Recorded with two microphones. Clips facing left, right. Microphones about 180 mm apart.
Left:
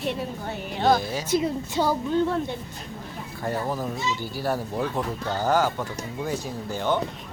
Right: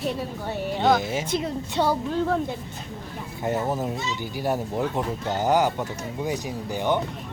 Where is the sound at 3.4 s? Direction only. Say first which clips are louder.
Right 2 dB; 20° right (ahead or behind).